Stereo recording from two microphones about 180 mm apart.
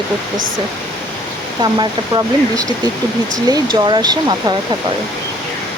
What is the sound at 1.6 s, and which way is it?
Speech, 25° right (ahead or behind).